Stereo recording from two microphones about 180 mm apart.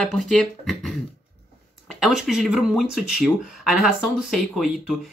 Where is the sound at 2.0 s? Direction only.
Centre (ahead or behind).